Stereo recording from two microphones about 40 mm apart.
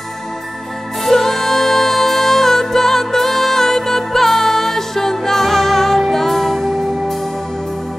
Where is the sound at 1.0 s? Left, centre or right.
Centre.